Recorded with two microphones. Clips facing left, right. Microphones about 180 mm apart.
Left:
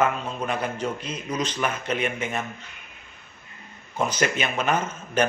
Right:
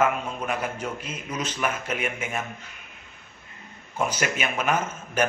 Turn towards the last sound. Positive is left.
turn(degrees=-10)  # may be behind; listen again after turning